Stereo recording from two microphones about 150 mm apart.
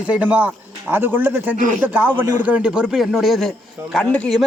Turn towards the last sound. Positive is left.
turn(degrees=5)  # may be behind; listen again after turning